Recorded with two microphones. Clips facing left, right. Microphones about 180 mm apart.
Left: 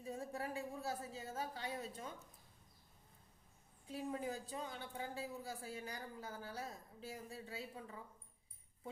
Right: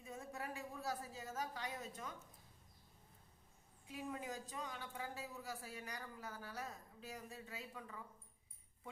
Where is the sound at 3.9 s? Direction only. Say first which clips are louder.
Left 4 dB; 30° left (ahead or behind).